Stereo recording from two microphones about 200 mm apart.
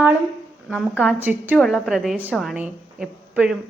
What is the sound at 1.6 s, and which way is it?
A woman's voice, centre (ahead or behind).